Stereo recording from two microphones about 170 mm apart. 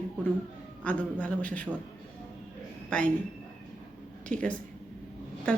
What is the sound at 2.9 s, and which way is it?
Speech, 5° left (ahead or behind).